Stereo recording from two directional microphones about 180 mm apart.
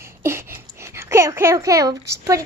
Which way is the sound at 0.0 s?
15° right (ahead or behind).